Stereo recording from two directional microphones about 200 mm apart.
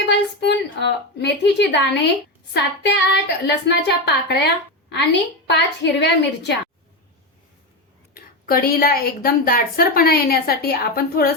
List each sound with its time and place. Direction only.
0.1 s a woman's voice: 60° left (ahead or behind)
8.1 s a woman's voice: 45° left (ahead or behind)